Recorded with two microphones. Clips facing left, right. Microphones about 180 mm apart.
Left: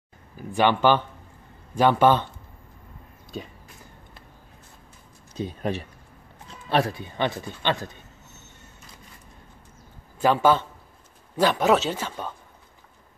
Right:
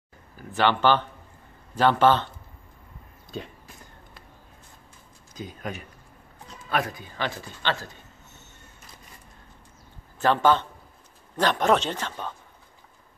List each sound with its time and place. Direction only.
0.6 s a man's voice: 15° left (ahead or behind)
5.3 s speech: 30° left (ahead or behind)
10.1 s a man's voice: 10° left (ahead or behind)